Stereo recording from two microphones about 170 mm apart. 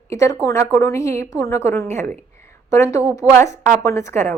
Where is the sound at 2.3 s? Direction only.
15° left (ahead or behind).